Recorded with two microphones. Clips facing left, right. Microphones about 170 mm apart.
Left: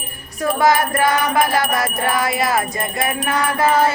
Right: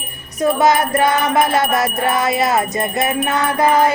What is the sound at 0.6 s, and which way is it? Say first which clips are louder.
Wind chime: even; 20° right (ahead or behind).